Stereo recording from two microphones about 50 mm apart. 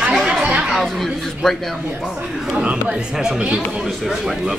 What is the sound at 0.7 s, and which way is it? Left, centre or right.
Speech, centre.